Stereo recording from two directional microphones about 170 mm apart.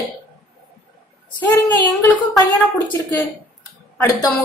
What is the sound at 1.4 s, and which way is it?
Speech, 10° left (ahead or behind).